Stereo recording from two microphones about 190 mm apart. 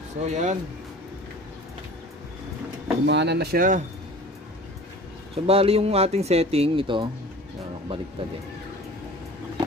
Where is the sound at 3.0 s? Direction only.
65° right (ahead or behind); by 3.8 s 45° right (ahead or behind).